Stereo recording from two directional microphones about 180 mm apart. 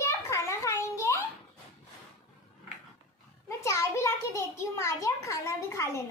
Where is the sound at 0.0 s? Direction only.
15° left (ahead or behind).